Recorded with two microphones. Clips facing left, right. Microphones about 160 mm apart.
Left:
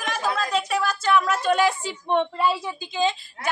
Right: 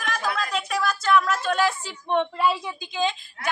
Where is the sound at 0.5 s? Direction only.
10° left (ahead or behind).